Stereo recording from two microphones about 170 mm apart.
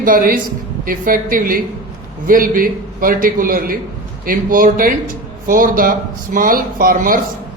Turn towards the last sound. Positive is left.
turn(degrees=-55)  # may be behind; listen again after turning